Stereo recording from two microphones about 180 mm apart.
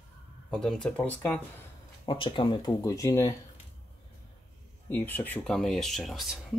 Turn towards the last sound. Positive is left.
turn(degrees=0)  # may be behind; listen again after turning